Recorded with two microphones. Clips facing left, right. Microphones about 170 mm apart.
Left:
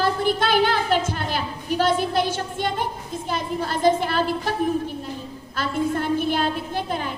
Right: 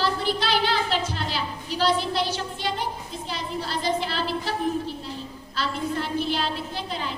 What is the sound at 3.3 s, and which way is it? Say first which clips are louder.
A woman's voice: left 4 dB; 50° left (ahead or behind).